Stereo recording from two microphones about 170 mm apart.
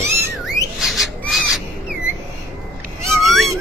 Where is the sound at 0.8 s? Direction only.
Centre (ahead or behind).